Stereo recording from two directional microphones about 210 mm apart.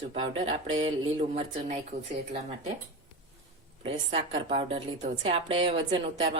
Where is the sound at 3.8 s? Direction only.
30° right (ahead or behind).